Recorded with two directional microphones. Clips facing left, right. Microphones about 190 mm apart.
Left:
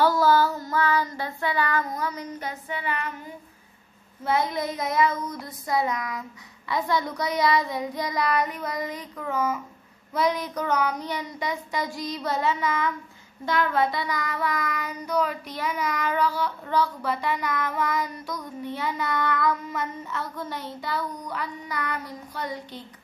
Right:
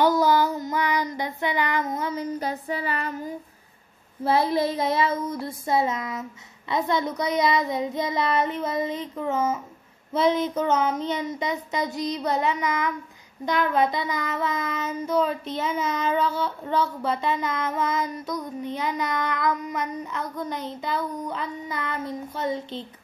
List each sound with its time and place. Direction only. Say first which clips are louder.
0.0 s child singing: even; 20° right (ahead or behind); by 3.1 s 35° right (ahead or behind)
4.2 s child singing: right 4 dB; 30° right (ahead or behind)